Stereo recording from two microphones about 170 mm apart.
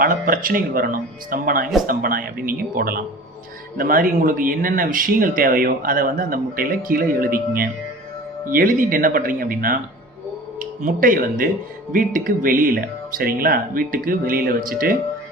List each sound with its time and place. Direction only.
0.0 s speech: 55° right (ahead or behind)